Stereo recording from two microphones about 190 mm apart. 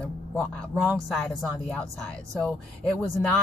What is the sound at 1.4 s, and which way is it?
Speech, 5° left (ahead or behind).